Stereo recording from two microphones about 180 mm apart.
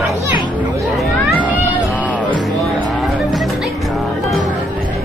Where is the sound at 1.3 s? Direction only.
10° right (ahead or behind).